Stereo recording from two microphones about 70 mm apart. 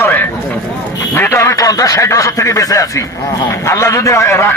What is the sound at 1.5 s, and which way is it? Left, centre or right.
A man's voice, left.